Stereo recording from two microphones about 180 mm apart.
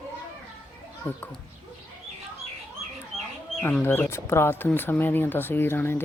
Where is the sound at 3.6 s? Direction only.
10° left (ahead or behind).